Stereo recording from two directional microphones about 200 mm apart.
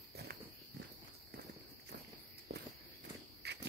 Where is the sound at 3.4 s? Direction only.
55° right (ahead or behind).